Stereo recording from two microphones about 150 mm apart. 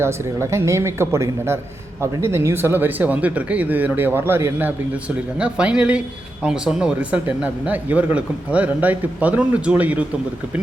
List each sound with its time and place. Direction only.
0.0 s speech: 20° right (ahead or behind)